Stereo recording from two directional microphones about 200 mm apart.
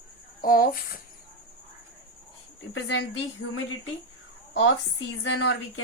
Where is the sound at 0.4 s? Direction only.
45° left (ahead or behind).